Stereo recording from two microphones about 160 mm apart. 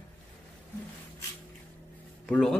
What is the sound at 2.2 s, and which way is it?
Speech, 5° left (ahead or behind).